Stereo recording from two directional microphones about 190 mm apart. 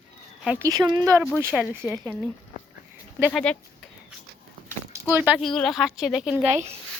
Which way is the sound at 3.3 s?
5° left (ahead or behind).